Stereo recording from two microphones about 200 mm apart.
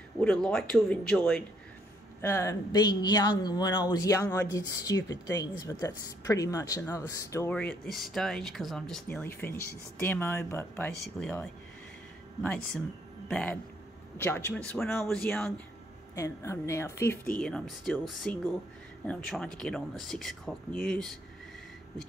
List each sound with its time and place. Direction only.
0.2 s speech: 5° left (ahead or behind)
2.2 s speech: 15° left (ahead or behind)
16.2 s speech: 15° left (ahead or behind)